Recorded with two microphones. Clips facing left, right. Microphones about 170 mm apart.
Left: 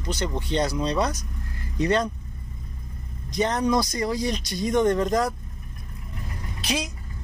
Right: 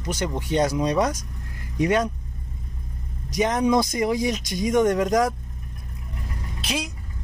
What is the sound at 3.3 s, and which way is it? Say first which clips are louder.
A man's voice: right 2 dB; 10° right (ahead or behind).